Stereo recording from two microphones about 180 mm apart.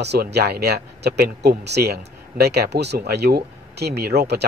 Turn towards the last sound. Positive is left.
turn(degrees=-65)  # may be behind; listen again after turning